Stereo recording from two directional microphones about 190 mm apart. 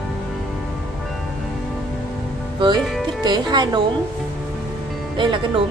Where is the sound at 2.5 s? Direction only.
25° right (ahead or behind).